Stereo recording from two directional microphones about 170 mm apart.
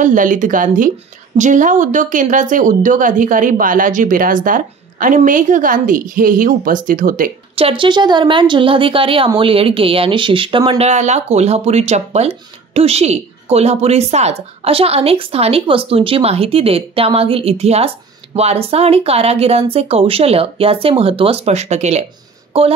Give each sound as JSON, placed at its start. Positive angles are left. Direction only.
{"t": 0.0, "sound": "speech", "side_deg": -50}
{"t": 7.5, "sound": "speech", "side_deg": -30}
{"t": 10.9, "sound": "speech", "side_deg": -40}